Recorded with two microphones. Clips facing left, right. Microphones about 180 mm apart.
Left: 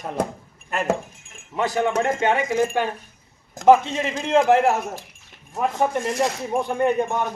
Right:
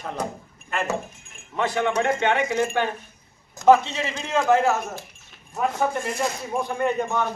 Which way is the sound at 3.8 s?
50° left (ahead or behind).